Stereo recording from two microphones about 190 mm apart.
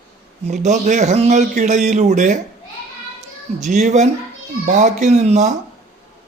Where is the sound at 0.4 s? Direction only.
40° right (ahead or behind).